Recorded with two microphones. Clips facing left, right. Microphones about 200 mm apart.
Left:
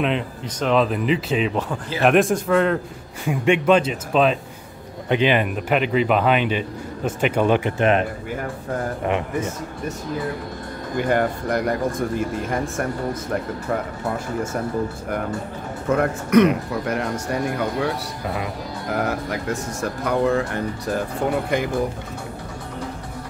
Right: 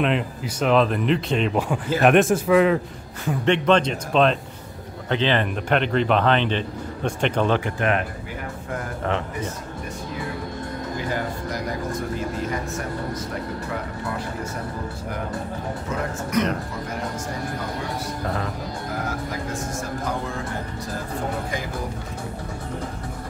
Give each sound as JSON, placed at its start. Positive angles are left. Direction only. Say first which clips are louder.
{"t": 0.0, "sound": "speech", "louder": "even", "side_deg": 0}
{"t": 1.5, "sound": "speech", "louder": "right 3 dB", "side_deg": -10}
{"t": 3.3, "sound": "speech", "louder": "left 2 dB", "side_deg": 10}
{"t": 11.0, "sound": "speech", "louder": "left 9 dB", "side_deg": 60}
{"t": 15.9, "sound": "speech", "louder": "left 10 dB", "side_deg": 60}
{"t": 16.8, "sound": "speech", "louder": "left 5 dB", "side_deg": 70}
{"t": 18.2, "sound": "speech", "louder": "left 1 dB", "side_deg": 10}
{"t": 19.8, "sound": "speech", "louder": "left 10 dB", "side_deg": 65}